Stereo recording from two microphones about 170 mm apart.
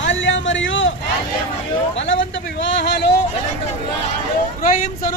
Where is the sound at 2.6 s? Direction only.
90° left.